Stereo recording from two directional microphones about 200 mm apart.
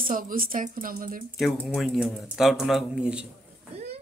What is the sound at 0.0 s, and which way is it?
Speech, 45° right (ahead or behind).